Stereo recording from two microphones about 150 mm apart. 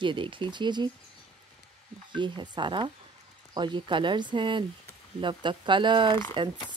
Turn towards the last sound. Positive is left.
turn(degrees=-35)  # may be behind; listen again after turning